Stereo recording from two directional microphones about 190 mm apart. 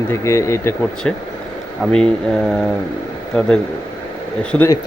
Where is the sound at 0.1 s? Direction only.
15° left (ahead or behind).